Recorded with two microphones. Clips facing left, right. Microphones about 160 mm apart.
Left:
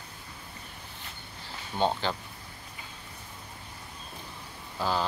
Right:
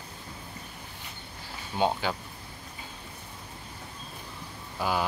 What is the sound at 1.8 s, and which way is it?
Speech, 10° right (ahead or behind).